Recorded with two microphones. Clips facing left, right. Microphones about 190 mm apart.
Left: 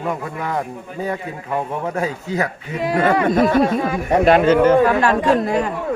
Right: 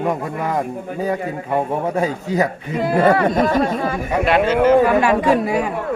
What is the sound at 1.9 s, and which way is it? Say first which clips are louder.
Speech: right 3 dB; 30° right (ahead or behind).